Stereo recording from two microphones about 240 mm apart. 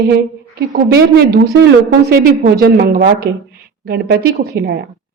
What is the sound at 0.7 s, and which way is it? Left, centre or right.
A woman's voice, right.